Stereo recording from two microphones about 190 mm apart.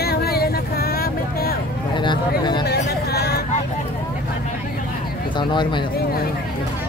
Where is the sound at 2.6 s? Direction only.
55° left (ahead or behind).